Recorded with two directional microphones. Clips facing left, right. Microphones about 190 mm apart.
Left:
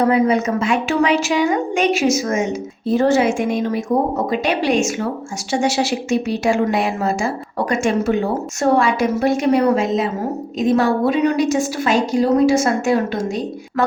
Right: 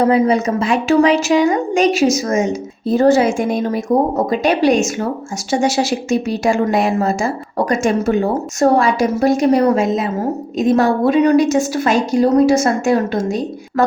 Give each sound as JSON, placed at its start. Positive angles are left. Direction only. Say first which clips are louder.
{"t": 0.1, "sound": "a woman's voice", "louder": "right 2 dB", "side_deg": -30}